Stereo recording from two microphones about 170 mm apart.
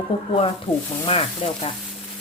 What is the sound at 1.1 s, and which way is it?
Speech, 35° left (ahead or behind).